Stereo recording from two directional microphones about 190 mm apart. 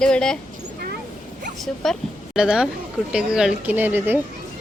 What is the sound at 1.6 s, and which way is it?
A woman's voice, centre (ahead or behind).